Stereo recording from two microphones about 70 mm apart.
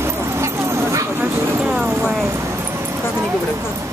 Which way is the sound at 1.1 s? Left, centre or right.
Right.